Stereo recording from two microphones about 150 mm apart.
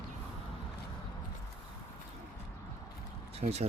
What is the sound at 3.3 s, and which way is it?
Speech, 45° right (ahead or behind).